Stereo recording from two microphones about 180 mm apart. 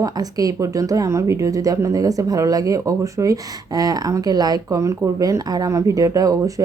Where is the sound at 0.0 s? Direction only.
20° right (ahead or behind).